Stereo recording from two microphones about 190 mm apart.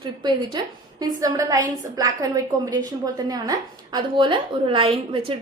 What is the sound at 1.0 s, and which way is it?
A woman's voice, 20° right (ahead or behind).